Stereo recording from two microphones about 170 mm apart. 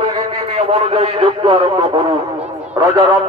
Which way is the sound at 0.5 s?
40° right (ahead or behind).